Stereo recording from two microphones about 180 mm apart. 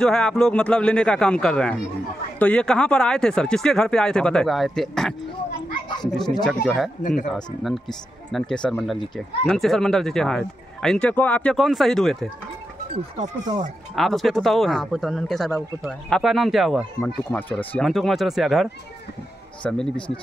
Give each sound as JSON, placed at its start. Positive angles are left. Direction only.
{"t": 0.0, "sound": "speech", "side_deg": 5}
{"t": 6.4, "sound": "speech", "side_deg": 0}
{"t": 7.0, "sound": "speech", "side_deg": 45}
{"t": 7.3, "sound": "speech", "side_deg": 0}
{"t": 12.9, "sound": "speech", "side_deg": -30}
{"t": 13.9, "sound": "speech", "side_deg": 0}
{"t": 17.0, "sound": "speech", "side_deg": 10}
{"t": 17.8, "sound": "speech", "side_deg": 0}